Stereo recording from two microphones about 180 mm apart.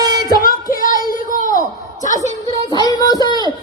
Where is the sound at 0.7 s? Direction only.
50° left (ahead or behind).